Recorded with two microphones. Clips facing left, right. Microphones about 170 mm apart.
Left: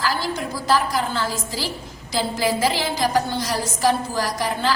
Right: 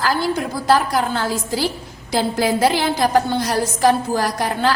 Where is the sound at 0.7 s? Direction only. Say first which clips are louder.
Right 4 dB; 60° right (ahead or behind).